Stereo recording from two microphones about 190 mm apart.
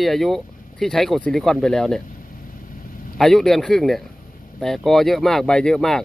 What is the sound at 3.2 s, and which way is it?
Speech, centre (ahead or behind).